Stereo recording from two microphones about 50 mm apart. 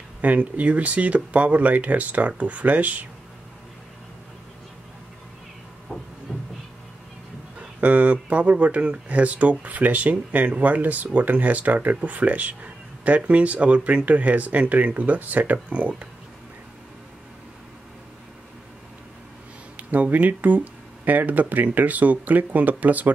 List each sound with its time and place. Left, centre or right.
0.2 s speech: right
6.3 s a sound: centre
7.8 s speech: right
19.8 s speech: right